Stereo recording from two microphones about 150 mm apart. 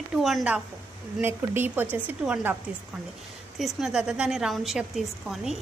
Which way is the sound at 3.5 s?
Centre (ahead or behind).